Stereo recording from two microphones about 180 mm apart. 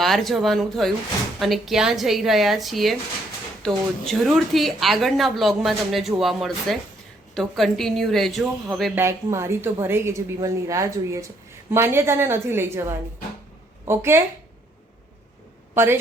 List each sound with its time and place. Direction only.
0.0 s a woman's voice: centre (ahead or behind)
9.0 s a woman's voice: 15° right (ahead or behind)
15.7 s a woman's voice: 15° right (ahead or behind)